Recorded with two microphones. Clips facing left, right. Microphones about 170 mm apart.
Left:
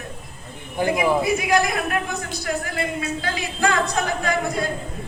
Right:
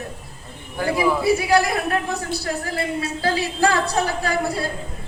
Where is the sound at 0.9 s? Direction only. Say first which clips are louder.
Right 3 dB; 35° right (ahead or behind).